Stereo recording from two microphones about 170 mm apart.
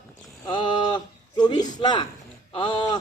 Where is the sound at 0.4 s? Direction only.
25° left (ahead or behind).